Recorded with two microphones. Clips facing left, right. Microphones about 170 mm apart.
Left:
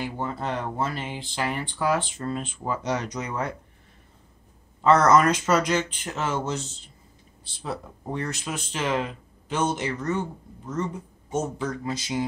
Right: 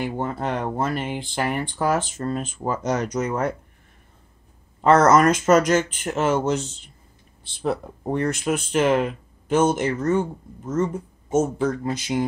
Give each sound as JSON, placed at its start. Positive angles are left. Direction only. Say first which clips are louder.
{"t": 0.0, "sound": "speech", "louder": "right 4 dB", "side_deg": -55}
{"t": 4.8, "sound": "speech", "louder": "right 3 dB", "side_deg": -50}
{"t": 7.6, "sound": "speech", "louder": "right 8 dB", "side_deg": -55}